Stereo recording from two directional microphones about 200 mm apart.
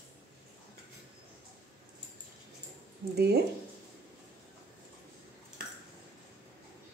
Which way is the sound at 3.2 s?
55° right (ahead or behind).